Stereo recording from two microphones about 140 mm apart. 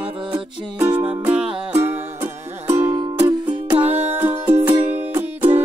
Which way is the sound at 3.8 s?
15° right (ahead or behind).